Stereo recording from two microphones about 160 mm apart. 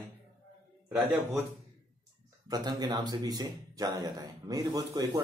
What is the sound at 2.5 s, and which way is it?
Speech, 25° right (ahead or behind).